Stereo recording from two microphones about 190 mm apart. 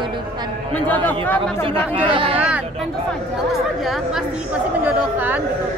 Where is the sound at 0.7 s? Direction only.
10° left (ahead or behind).